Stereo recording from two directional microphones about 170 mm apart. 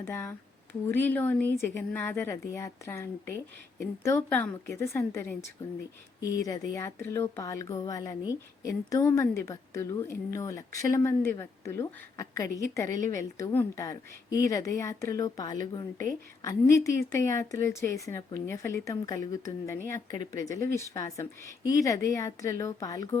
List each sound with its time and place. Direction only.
0.0 s a woman's voice: 15° left (ahead or behind)